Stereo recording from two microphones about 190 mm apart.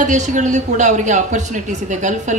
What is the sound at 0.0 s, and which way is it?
A woman's voice, 40° right (ahead or behind).